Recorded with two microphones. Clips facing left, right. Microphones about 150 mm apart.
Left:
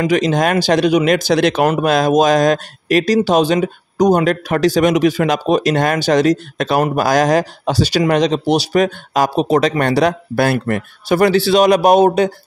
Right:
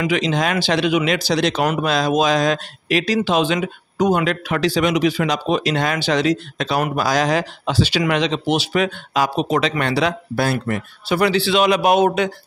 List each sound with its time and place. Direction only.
0.0 s speech: 45° left (ahead or behind)